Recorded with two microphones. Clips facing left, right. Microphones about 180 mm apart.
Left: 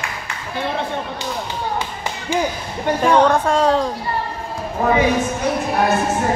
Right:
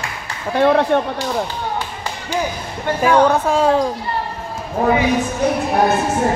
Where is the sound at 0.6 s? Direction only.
65° right (ahead or behind).